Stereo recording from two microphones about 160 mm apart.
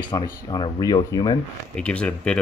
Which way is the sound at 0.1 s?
25° left (ahead or behind).